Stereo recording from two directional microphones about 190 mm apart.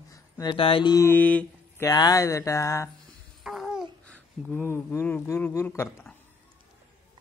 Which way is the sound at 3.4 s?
Centre (ahead or behind).